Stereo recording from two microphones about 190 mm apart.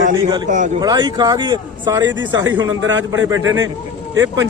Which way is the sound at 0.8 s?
20° right (ahead or behind).